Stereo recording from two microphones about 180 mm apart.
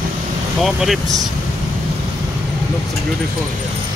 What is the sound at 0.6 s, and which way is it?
Speech, centre (ahead or behind).